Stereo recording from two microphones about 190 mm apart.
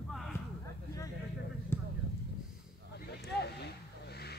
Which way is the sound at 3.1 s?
60° left (ahead or behind).